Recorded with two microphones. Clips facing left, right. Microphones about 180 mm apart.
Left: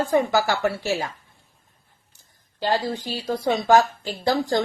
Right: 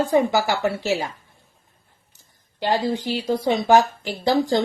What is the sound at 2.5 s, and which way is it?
A woman's voice, 20° right (ahead or behind).